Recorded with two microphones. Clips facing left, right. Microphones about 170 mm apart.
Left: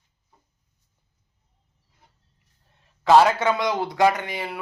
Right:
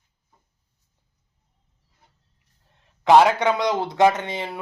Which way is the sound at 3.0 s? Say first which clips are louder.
Right 1 dB; 20° right (ahead or behind).